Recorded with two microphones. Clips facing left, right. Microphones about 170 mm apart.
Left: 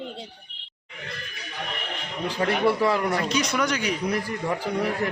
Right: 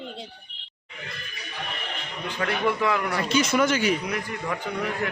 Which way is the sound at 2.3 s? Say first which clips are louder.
Left 3 dB; 30° left (ahead or behind).